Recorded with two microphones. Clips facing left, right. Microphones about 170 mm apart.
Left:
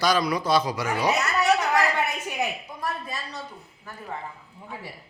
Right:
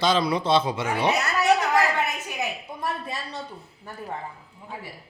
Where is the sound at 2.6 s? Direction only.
25° right (ahead or behind).